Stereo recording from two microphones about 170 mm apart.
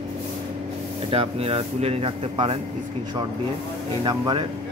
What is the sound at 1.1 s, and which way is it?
Speech, 35° right (ahead or behind).